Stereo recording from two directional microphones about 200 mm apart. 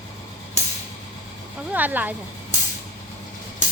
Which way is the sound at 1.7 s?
10° right (ahead or behind).